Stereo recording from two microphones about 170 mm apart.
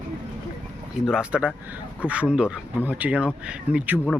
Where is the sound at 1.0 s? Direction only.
5° right (ahead or behind).